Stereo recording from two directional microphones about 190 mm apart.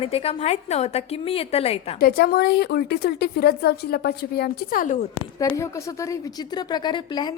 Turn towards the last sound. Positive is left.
turn(degrees=25)  # may be behind; listen again after turning